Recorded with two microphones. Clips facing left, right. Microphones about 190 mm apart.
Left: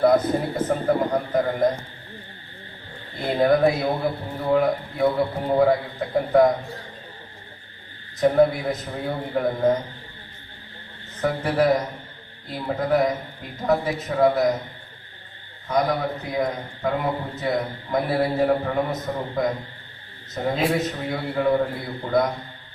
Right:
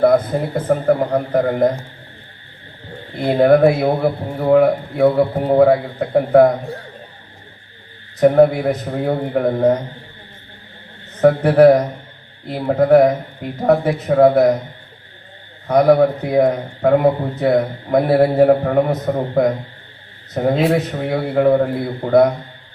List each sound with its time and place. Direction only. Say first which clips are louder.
0.5 s a man's voice: right 9 dB; 60° right (ahead or behind)
3.2 s a man's voice: right 7 dB; 60° right (ahead or behind)
8.2 s a man's voice: right 6 dB; 65° right (ahead or behind)
11.2 s a man's voice: right 11 dB; 60° right (ahead or behind)
15.6 s a man's voice: right 11 dB; 60° right (ahead or behind)